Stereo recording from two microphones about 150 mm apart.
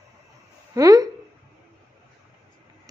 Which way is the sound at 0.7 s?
25° right (ahead or behind).